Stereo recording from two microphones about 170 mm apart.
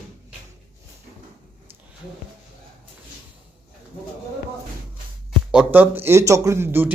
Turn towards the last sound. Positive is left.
turn(degrees=-10)  # may be behind; listen again after turning